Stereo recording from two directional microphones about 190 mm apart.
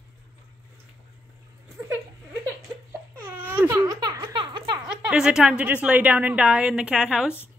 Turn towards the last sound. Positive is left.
turn(degrees=-5)  # may be behind; listen again after turning